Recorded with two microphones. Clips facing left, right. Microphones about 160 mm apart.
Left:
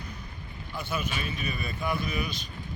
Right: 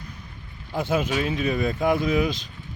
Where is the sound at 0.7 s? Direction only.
90° right.